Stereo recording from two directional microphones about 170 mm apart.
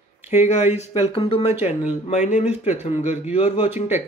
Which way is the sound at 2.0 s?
45° left (ahead or behind).